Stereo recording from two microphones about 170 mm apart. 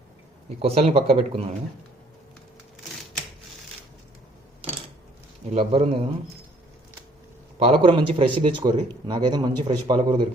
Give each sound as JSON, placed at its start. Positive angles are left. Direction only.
{"t": 0.6, "sound": "speech", "side_deg": -35}
{"t": 4.6, "sound": "a sound", "side_deg": -35}
{"t": 5.5, "sound": "speech", "side_deg": -40}
{"t": 7.6, "sound": "a man's voice", "side_deg": -35}